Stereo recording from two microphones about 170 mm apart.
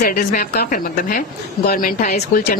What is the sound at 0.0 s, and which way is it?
A woman's voice, 60° left (ahead or behind).